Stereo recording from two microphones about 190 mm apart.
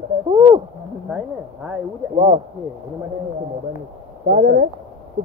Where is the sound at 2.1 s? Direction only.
25° right (ahead or behind).